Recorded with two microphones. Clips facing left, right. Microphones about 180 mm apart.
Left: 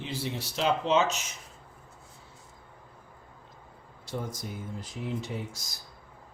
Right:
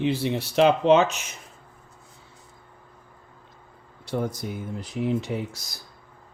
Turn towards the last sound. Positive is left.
turn(degrees=-65)  # may be behind; listen again after turning